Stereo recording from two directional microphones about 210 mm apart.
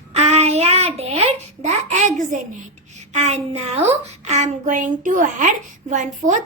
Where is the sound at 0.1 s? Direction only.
30° right (ahead or behind).